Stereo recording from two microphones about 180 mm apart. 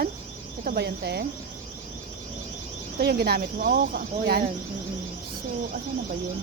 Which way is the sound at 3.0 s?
60° right (ahead or behind).